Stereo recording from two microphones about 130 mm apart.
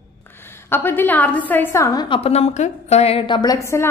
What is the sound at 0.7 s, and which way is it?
A woman's voice, 15° left (ahead or behind).